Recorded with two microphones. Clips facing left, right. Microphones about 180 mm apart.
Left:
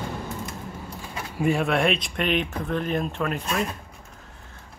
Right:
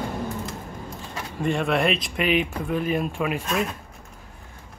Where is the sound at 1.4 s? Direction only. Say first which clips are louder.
Left 1 dB; 5° left (ahead or behind).